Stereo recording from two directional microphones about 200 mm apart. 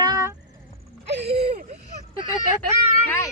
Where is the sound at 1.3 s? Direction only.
30° right (ahead or behind).